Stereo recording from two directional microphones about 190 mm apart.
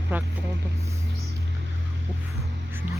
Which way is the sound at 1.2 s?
55° right (ahead or behind).